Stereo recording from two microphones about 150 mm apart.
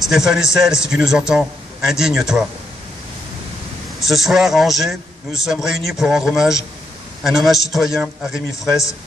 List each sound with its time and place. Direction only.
0.0 s a man's voice: centre (ahead or behind)
4.0 s a man's voice: centre (ahead or behind)